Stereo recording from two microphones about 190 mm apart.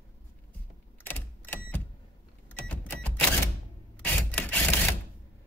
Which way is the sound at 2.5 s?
10° left (ahead or behind).